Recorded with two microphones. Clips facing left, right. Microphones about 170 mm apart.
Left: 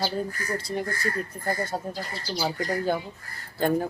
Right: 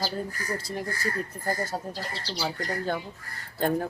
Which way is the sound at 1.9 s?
30° right (ahead or behind).